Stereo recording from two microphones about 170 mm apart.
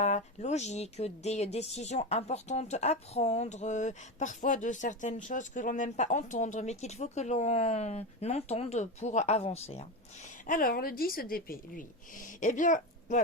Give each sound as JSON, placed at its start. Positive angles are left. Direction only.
{"t": 0.0, "sound": "speech", "side_deg": 40}
{"t": 10.4, "sound": "speech", "side_deg": 55}